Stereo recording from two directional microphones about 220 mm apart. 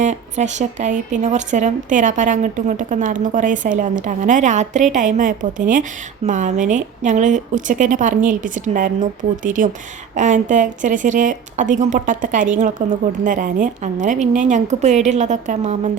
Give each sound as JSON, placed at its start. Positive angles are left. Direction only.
{"t": 0.0, "sound": "a woman's voice", "side_deg": -30}